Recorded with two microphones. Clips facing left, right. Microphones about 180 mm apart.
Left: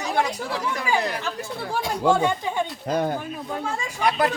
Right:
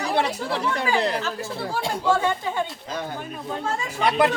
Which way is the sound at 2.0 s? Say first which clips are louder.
Left 2 dB; 15° left (ahead or behind).